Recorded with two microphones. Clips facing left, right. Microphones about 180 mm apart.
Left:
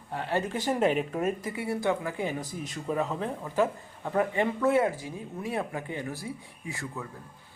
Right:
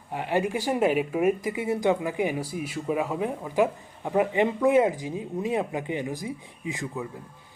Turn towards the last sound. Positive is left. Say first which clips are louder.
# right 5 dB
turn(degrees=-15)  # may be behind; listen again after turning